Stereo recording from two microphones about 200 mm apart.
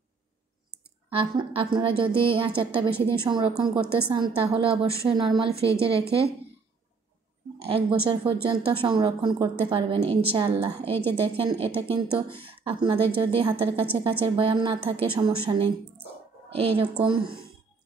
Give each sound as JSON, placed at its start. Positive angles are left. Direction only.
{"t": 1.1, "sound": "a woman's voice", "side_deg": -25}
{"t": 7.5, "sound": "a woman's voice", "side_deg": -30}
{"t": 17.2, "sound": "speech", "side_deg": -50}